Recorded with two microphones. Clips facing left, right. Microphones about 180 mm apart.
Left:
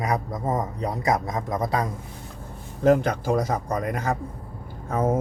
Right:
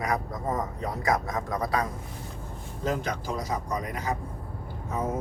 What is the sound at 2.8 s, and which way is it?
Speech, 55° left (ahead or behind).